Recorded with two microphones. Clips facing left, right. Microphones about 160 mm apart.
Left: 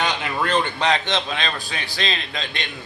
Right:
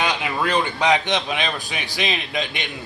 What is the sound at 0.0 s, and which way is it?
Speech, 10° right (ahead or behind).